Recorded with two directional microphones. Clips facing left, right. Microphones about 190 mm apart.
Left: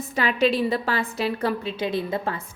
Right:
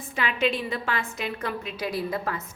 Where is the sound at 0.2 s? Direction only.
35° left (ahead or behind).